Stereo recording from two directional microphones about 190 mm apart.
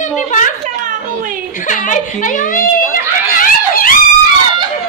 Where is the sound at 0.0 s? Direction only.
40° left (ahead or behind).